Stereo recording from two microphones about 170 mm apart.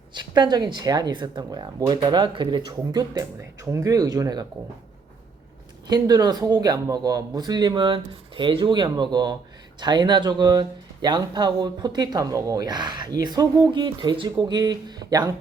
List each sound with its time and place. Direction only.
0.1 s speech: 25° right (ahead or behind)
5.9 s speech: 25° right (ahead or behind)